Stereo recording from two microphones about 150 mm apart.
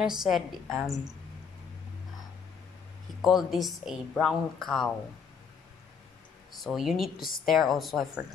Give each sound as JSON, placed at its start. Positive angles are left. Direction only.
{"t": 0.0, "sound": "a woman's voice", "side_deg": -5}
{"t": 3.2, "sound": "a woman's voice", "side_deg": 0}
{"t": 6.6, "sound": "a woman's voice", "side_deg": 0}
{"t": 7.2, "sound": "a woman's voice", "side_deg": 70}
{"t": 7.4, "sound": "a woman's voice", "side_deg": 0}